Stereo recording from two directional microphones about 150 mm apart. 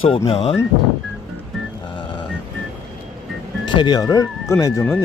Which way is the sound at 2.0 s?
30° left (ahead or behind).